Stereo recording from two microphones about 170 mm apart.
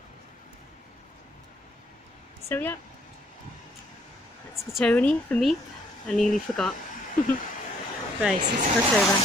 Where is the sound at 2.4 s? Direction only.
15° left (ahead or behind).